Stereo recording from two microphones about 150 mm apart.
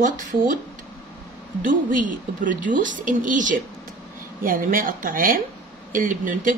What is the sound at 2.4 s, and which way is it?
A woman's voice, 60° right (ahead or behind).